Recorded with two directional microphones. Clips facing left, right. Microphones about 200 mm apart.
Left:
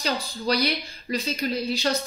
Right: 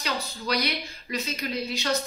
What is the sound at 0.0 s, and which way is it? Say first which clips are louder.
A woman's voice: left 4 dB; 30° left (ahead or behind).